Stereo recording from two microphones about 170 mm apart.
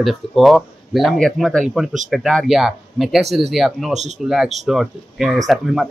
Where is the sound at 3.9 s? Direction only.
40° right (ahead or behind).